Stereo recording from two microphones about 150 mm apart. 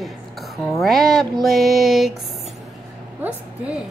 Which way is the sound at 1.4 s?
Centre (ahead or behind).